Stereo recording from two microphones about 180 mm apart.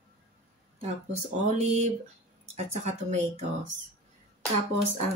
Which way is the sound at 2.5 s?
40° right (ahead or behind).